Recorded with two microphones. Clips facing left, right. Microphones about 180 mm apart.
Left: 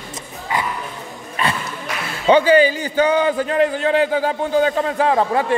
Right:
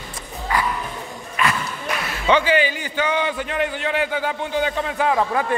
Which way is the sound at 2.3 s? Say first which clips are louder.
Left 6 dB; 40° left (ahead or behind).